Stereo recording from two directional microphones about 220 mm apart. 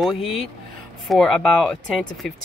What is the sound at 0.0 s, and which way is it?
Speech, centre (ahead or behind).